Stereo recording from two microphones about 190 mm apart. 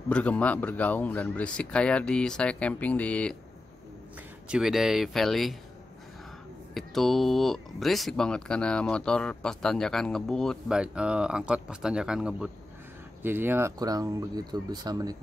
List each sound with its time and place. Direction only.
0.1 s speech: 5° left (ahead or behind)
4.5 s speech: 5° right (ahead or behind)
6.7 s speech: centre (ahead or behind); by 15.1 s 20° right (ahead or behind)